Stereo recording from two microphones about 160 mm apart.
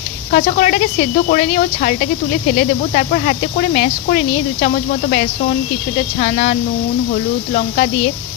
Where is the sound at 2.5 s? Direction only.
55° left (ahead or behind).